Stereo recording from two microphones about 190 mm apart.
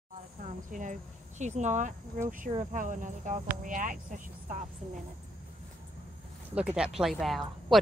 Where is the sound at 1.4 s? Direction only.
40° right (ahead or behind).